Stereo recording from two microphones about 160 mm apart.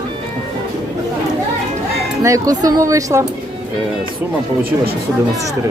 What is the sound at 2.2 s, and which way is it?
Speech, 20° right (ahead or behind).